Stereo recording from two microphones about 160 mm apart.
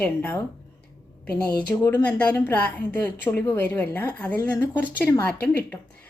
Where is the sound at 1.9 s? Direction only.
10° left (ahead or behind).